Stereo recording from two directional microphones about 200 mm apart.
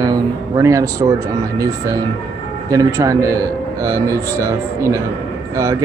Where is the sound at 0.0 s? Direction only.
20° right (ahead or behind).